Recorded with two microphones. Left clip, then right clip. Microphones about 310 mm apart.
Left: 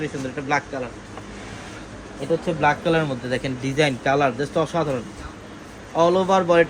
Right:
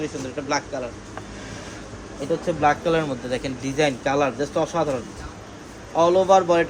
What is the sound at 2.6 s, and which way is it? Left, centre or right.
A man's voice, left.